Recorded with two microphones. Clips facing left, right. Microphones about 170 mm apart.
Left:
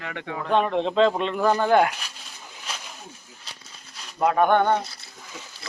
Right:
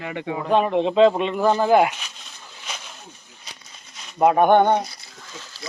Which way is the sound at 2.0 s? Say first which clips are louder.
Even; 5° left (ahead or behind).